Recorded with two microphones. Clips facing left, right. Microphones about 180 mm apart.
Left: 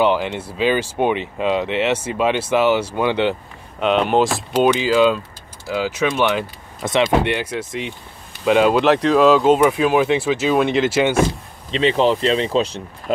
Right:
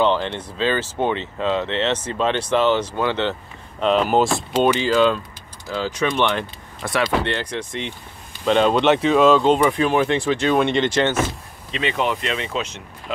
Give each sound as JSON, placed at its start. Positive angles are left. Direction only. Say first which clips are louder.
{"t": 0.0, "sound": "speech", "louder": "left 2 dB", "side_deg": 10}
{"t": 3.8, "sound": "speech", "louder": "left 1 dB", "side_deg": 0}
{"t": 6.8, "sound": "speech", "louder": "left 4 dB", "side_deg": 20}
{"t": 7.3, "sound": "speech", "louder": "left 2 dB", "side_deg": 5}
{"t": 11.7, "sound": "speech", "louder": "left 6 dB", "side_deg": 30}